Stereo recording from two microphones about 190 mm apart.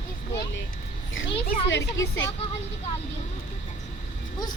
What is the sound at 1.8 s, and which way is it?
Speech, 15° left (ahead or behind).